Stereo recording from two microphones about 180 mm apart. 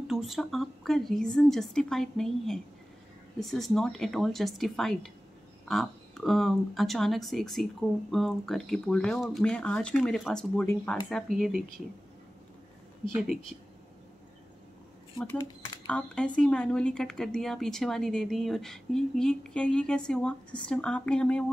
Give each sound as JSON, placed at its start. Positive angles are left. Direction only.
{"t": 0.1, "sound": "a woman's voice", "side_deg": 0}
{"t": 15.1, "sound": "speech", "side_deg": 20}
{"t": 16.3, "sound": "a woman's voice", "side_deg": 5}